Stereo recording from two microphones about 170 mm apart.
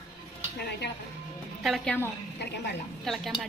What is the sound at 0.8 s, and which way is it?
Speech, 85° left.